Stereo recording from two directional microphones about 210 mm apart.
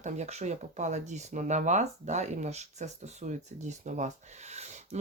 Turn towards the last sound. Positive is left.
turn(degrees=-35)  # may be behind; listen again after turning